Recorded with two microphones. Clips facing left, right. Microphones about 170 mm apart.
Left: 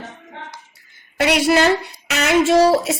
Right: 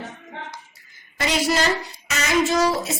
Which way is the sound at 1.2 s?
65° left (ahead or behind).